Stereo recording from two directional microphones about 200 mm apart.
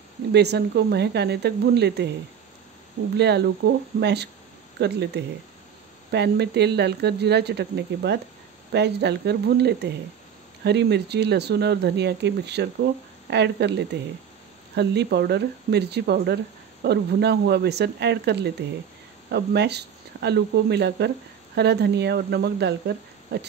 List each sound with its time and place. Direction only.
0.3 s speech: 55° right (ahead or behind)
3.2 s speech: 55° right (ahead or behind)